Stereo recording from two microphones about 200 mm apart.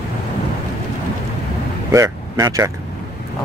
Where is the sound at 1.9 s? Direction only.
15° right (ahead or behind).